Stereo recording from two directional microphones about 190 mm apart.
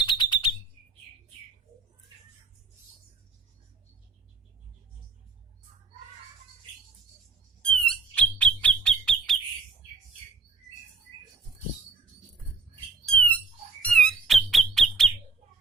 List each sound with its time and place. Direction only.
0.0 s alarm: 25° left (ahead or behind)
7.6 s bird: 5° left (ahead or behind)
13.1 s squawk: 5° left (ahead or behind)